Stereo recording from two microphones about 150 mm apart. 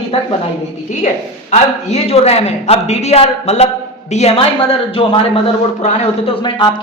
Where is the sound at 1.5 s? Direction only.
45° left (ahead or behind).